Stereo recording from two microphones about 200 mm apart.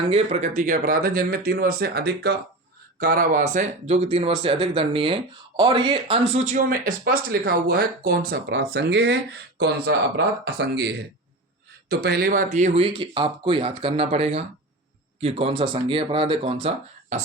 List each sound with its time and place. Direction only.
0.1 s speech: 30° right (ahead or behind)
6.3 s speech: 35° right (ahead or behind)